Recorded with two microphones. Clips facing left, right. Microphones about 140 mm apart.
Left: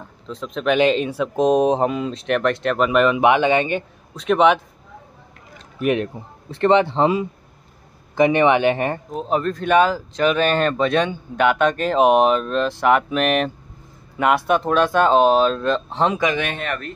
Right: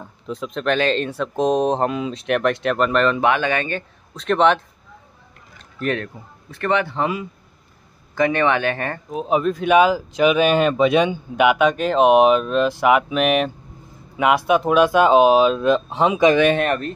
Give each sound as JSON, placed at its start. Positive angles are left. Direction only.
{"t": 0.0, "sound": "speech", "side_deg": -5}
{"t": 0.7, "sound": "speech", "side_deg": 10}
{"t": 4.2, "sound": "speech", "side_deg": 5}
{"t": 5.8, "sound": "speech", "side_deg": 15}
{"t": 6.5, "sound": "speech", "side_deg": 25}
{"t": 9.1, "sound": "speech", "side_deg": -5}
{"t": 16.6, "sound": "speech", "side_deg": -30}